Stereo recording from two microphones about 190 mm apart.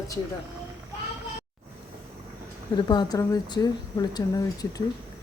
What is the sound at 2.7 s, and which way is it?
A woman's voice, 20° left (ahead or behind).